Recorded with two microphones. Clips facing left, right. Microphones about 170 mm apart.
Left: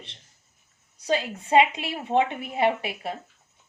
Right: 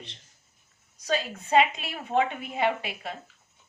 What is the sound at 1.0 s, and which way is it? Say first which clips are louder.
Speech: left 3 dB; 25° left (ahead or behind).